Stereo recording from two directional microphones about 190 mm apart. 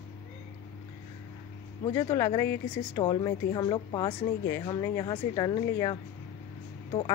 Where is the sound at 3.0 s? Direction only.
25° left (ahead or behind).